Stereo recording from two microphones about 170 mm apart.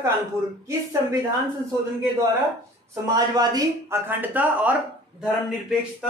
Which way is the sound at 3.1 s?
25° right (ahead or behind).